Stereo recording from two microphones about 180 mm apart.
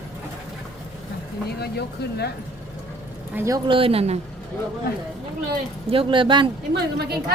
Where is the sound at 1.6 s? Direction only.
65° left (ahead or behind).